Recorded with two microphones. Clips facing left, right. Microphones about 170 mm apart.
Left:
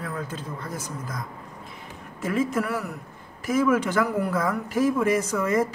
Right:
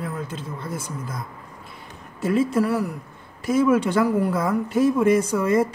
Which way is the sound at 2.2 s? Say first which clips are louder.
Right 5 dB; 30° right (ahead or behind).